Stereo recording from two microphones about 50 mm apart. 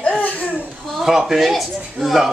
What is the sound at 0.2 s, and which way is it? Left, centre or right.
Laughter, left.